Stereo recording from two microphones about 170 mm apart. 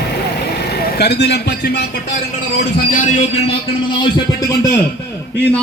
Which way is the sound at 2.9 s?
45° left (ahead or behind).